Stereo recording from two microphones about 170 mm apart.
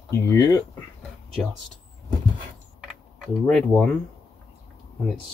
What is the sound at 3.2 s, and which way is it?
Speech, centre (ahead or behind).